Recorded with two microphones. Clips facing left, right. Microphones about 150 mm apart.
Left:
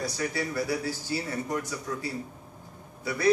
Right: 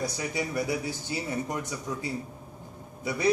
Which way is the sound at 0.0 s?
20° right (ahead or behind).